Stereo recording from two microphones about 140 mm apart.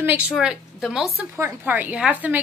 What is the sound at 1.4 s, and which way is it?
A woman's voice, 15° right (ahead or behind).